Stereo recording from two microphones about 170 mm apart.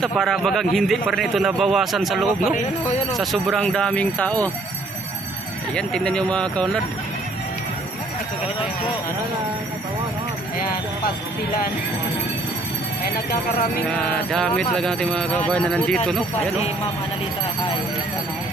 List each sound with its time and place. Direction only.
0.0 s a man's voice: centre (ahead or behind)
5.8 s a man's voice: 5° left (ahead or behind)
13.0 s speech: 65° left (ahead or behind)
13.9 s a man's voice: 5° left (ahead or behind)